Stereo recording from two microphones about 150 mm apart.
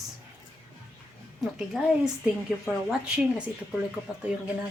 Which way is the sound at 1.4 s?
5° right (ahead or behind).